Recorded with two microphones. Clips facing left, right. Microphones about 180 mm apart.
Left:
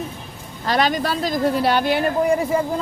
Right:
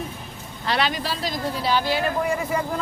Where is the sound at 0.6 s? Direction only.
45° left (ahead or behind).